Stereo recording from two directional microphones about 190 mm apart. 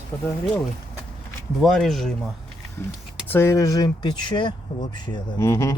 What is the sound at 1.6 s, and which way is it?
Speech, centre (ahead or behind).